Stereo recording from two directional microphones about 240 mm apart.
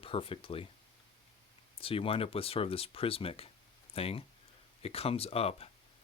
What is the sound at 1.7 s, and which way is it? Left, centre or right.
Speech, left.